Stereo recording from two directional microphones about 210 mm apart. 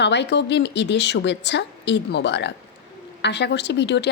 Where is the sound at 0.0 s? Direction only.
55° left (ahead or behind).